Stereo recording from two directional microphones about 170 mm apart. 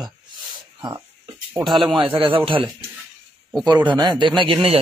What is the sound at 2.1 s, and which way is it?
Speech, 30° right (ahead or behind).